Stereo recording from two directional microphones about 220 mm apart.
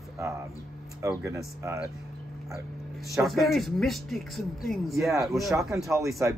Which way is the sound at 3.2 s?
Centre (ahead or behind).